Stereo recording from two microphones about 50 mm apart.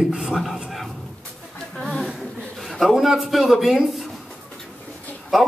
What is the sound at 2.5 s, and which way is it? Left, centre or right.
Speech, centre.